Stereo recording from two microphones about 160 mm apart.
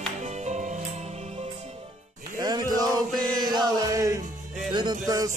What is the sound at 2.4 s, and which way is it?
Male singing, 25° right (ahead or behind).